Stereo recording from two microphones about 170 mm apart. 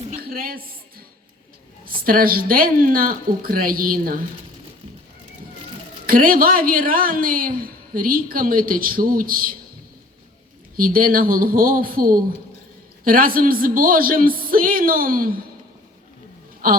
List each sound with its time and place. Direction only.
0.2 s a sound: 60° right (ahead or behind)
1.8 s a woman's voice: 60° right (ahead or behind)
6.1 s a woman's voice: 55° right (ahead or behind)
10.8 s a woman's voice: 55° right (ahead or behind)
16.6 s a woman's voice: 55° right (ahead or behind)